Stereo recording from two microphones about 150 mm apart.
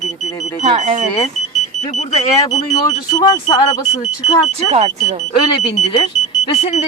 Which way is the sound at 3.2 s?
25° left (ahead or behind).